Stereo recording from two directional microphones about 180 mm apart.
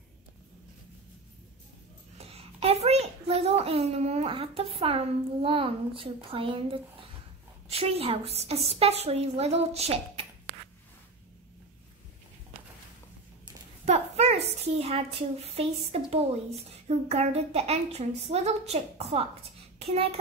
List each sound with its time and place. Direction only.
2.1 s a child's voice: 35° right (ahead or behind)
13.8 s a sound: 35° right (ahead or behind)
16.8 s a woman's voice: 35° right (ahead or behind)